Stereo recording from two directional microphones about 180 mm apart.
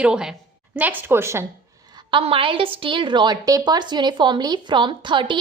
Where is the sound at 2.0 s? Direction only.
30° right (ahead or behind).